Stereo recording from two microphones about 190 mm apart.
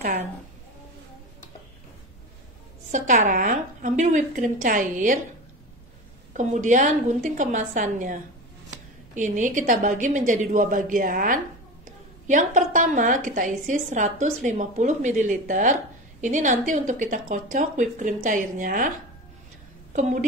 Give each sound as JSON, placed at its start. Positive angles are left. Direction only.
{"t": 2.9, "sound": "a woman's voice", "side_deg": -40}
{"t": 6.3, "sound": "a woman's voice", "side_deg": -40}